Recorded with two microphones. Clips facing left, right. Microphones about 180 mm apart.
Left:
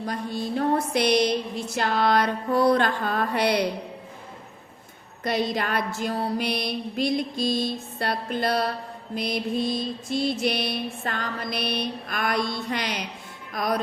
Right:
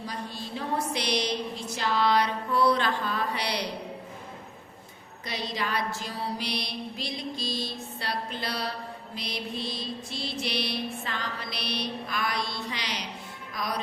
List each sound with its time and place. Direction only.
0.0 s mantra: 55° left (ahead or behind)
5.2 s mantra: 50° left (ahead or behind)
13.5 s music: 55° left (ahead or behind)